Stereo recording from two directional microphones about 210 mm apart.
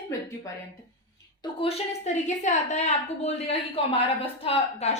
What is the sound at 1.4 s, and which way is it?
A woman's voice, 30° left (ahead or behind).